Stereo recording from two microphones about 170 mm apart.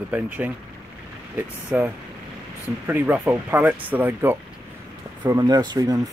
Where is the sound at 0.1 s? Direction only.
10° right (ahead or behind).